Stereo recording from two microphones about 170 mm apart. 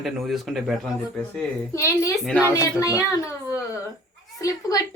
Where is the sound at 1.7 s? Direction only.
20° left (ahead or behind).